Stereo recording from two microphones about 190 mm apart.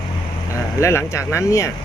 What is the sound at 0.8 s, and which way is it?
Speech, 15° left (ahead or behind).